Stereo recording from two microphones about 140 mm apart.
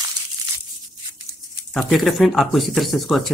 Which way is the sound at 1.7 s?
Centre (ahead or behind).